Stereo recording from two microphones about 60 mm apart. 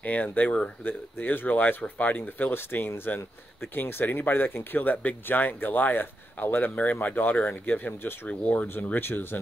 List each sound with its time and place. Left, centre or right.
0.0 s speech: left